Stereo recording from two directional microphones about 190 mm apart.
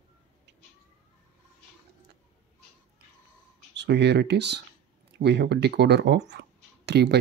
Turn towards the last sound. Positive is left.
turn(degrees=-60)  # may be behind; listen again after turning